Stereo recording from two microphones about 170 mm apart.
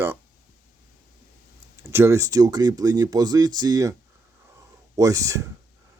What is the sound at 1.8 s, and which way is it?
Speech, 15° right (ahead or behind).